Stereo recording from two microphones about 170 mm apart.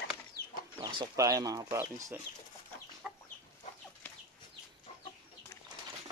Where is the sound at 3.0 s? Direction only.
Centre (ahead or behind).